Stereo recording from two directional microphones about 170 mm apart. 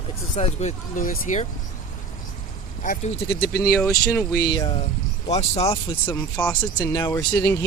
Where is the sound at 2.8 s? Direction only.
45° left (ahead or behind).